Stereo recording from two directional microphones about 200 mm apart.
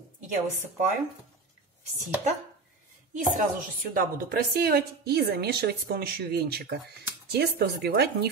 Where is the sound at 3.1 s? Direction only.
40° right (ahead or behind).